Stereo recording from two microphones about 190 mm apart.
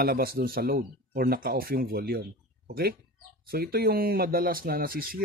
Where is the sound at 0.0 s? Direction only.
55° right (ahead or behind).